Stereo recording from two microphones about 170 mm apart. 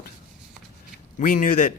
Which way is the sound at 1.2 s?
50° left (ahead or behind).